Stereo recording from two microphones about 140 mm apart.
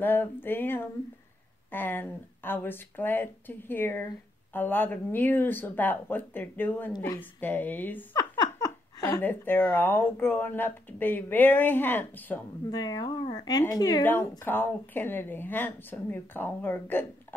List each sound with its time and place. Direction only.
0.0 s speech: 15° left (ahead or behind)
8.1 s speech: 30° left (ahead or behind)
12.7 s speech: 30° left (ahead or behind)
14.4 s speech: 15° left (ahead or behind)